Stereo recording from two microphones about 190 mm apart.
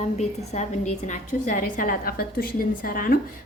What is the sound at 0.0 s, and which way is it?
A woman's voice, 35° left (ahead or behind).